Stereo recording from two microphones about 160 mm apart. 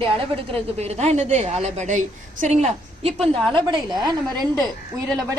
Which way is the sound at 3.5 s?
25° right (ahead or behind).